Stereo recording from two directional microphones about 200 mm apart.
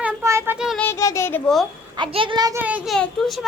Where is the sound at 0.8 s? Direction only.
15° left (ahead or behind).